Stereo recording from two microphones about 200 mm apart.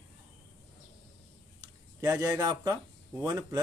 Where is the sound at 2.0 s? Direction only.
10° right (ahead or behind).